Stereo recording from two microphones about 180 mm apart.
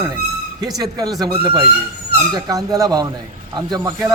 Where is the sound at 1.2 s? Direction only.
25° right (ahead or behind).